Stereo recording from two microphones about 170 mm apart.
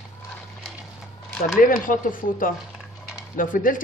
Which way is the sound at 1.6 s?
55° left (ahead or behind).